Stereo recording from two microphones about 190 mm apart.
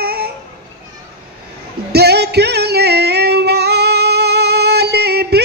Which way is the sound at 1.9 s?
60° right (ahead or behind).